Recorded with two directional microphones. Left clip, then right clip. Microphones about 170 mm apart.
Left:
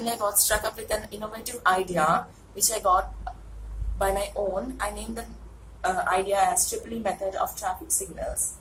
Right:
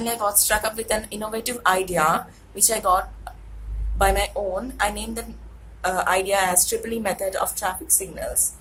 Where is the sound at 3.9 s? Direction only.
45° right (ahead or behind).